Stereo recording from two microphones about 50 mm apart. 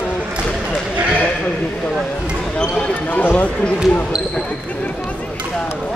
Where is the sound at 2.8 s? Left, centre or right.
Left.